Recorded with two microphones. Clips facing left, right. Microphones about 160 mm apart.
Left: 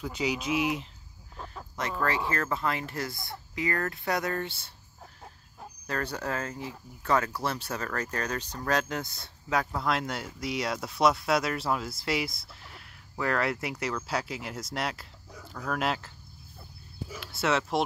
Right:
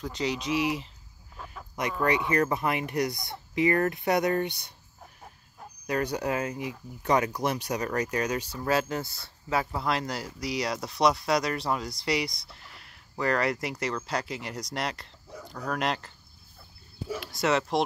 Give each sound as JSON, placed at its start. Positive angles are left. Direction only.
{"t": 0.0, "sound": "speech", "side_deg": 5}
{"t": 1.8, "sound": "speech", "side_deg": -15}
{"t": 5.9, "sound": "speech", "side_deg": -15}
{"t": 17.2, "sound": "speech", "side_deg": 0}